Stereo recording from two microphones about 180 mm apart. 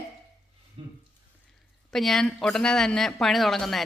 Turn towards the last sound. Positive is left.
turn(degrees=0)  # may be behind; listen again after turning